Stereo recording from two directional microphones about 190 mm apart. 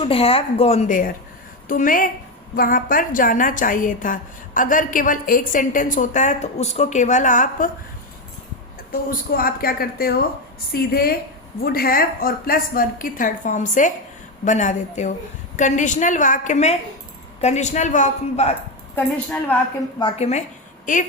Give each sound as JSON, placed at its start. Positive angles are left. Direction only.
{"t": 0.0, "sound": "a woman's voice", "side_deg": 30}
{"t": 8.9, "sound": "a woman's voice", "side_deg": 50}
{"t": 18.9, "sound": "a woman's voice", "side_deg": 10}
{"t": 20.0, "sound": "a woman's voice", "side_deg": 30}